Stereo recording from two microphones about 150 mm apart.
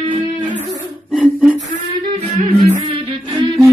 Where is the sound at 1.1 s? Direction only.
10° right (ahead or behind).